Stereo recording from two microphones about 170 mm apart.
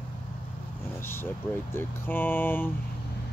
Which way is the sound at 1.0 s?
15° left (ahead or behind).